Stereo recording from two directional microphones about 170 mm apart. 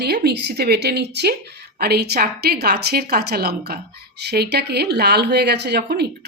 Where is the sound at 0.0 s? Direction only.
70° right (ahead or behind).